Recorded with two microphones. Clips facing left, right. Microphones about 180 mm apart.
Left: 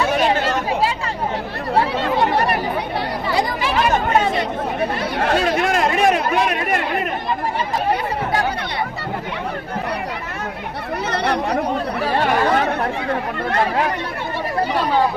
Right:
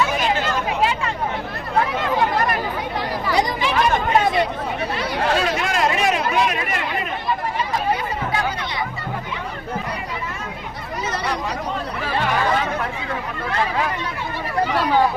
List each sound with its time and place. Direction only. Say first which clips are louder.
0.0 s chatter: left 3 dB; 35° left (ahead or behind)
5.2 s a sound: left 3 dB; 55° left (ahead or behind)
11.1 s chatter: left 6 dB; 60° left (ahead or behind)